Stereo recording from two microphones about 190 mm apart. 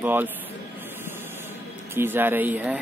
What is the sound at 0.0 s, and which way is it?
Speech, 10° right (ahead or behind).